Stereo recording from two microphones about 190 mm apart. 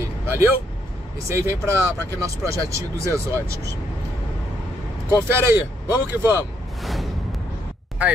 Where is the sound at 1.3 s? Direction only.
15° right (ahead or behind).